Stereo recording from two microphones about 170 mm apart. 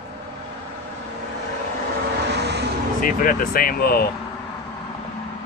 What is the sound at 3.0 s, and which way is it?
Speech, 55° left (ahead or behind).